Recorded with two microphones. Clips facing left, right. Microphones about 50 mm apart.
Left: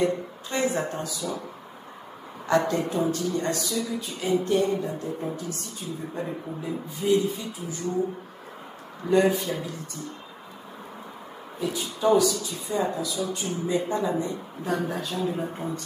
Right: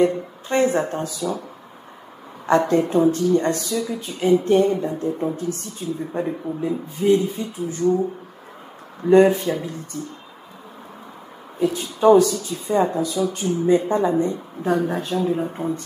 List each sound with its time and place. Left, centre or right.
0.0 s speech: right
2.4 s speech: right
9.1 s speech: right
11.6 s speech: right